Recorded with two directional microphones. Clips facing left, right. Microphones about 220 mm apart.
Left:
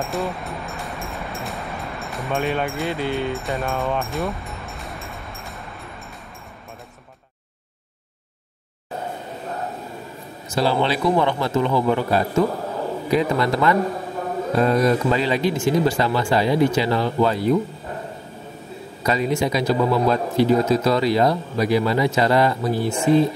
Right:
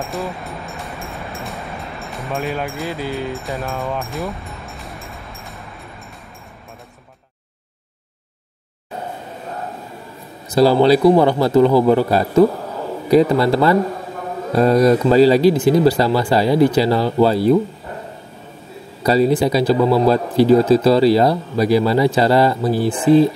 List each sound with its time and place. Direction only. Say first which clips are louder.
0.0 s vehicle: even; centre (ahead or behind)
10.5 s speech: right 9 dB; 40° right (ahead or behind)
19.0 s speech: right 6 dB; 35° right (ahead or behind)